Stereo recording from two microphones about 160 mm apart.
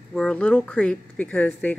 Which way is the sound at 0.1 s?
5° left (ahead or behind).